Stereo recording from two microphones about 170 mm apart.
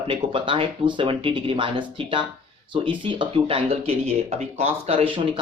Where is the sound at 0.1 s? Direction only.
30° right (ahead or behind).